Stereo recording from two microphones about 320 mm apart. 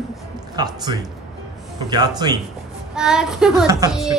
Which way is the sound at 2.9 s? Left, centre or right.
Centre.